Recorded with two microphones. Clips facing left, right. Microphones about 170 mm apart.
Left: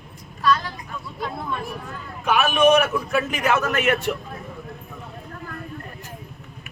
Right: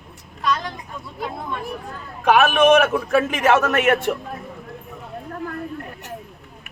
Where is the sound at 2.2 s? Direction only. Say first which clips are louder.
Right 3 dB; 55° right (ahead or behind).